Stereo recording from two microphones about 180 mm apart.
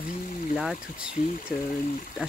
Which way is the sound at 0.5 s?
5° right (ahead or behind).